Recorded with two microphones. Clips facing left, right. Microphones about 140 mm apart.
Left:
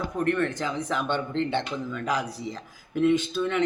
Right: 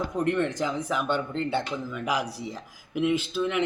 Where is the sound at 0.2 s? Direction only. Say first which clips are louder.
Even; 20° right (ahead or behind).